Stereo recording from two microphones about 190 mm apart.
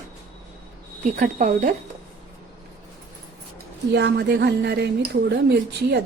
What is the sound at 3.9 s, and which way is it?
A woman's voice, 65° right (ahead or behind).